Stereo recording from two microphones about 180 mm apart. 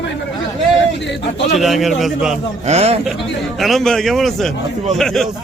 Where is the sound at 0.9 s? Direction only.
75° left (ahead or behind).